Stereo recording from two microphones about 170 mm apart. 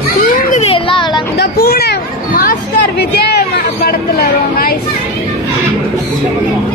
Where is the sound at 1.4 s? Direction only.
65° left (ahead or behind).